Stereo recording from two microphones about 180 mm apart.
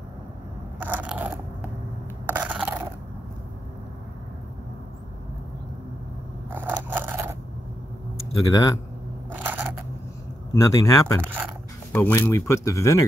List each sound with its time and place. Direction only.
0.7 s biting: 10° right (ahead or behind)
2.2 s a sound: 10° right (ahead or behind)
6.5 s scissors: 10° right (ahead or behind)
8.5 s speech: 20° left (ahead or behind)
9.3 s a sound: 10° right (ahead or behind)
10.5 s speech: 20° left (ahead or behind)
11.2 s speech: 10° right (ahead or behind)
11.9 s speech: 10° left (ahead or behind)